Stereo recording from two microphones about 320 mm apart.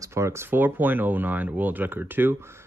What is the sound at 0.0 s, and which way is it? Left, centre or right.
Speech, centre.